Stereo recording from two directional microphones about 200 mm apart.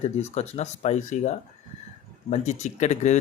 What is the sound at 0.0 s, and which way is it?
Speech, 35° left (ahead or behind).